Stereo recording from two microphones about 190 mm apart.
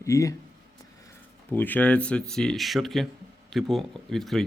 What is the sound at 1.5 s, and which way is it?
Speech, 10° left (ahead or behind).